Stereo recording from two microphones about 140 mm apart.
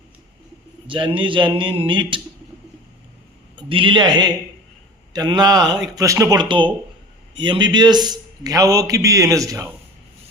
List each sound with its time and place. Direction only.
0.9 s speech: 35° right (ahead or behind)
3.5 s a man's voice: 35° right (ahead or behind)
6.3 s a man's voice: 35° right (ahead or behind)